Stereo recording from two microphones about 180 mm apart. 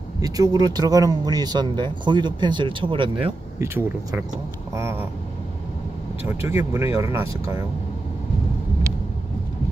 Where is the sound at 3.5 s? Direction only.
15° right (ahead or behind).